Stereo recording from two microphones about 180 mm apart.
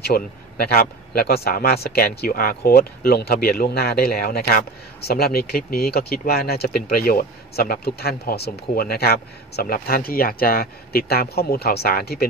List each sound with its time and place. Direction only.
0.0 s speech: 60° left (ahead or behind)